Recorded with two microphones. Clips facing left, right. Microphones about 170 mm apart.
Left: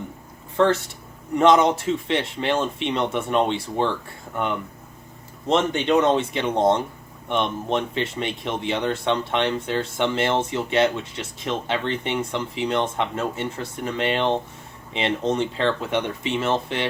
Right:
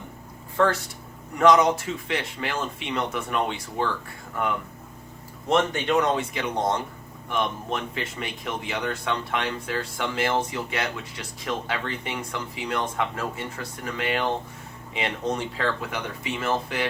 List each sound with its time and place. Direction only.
0.5 s speech: 25° left (ahead or behind)
5.5 s speech: 20° left (ahead or behind)